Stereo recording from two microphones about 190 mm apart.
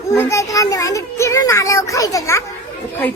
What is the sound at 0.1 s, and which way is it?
A child's voice, 15° left (ahead or behind).